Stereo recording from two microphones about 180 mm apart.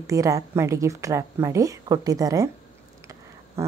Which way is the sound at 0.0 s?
15° right (ahead or behind).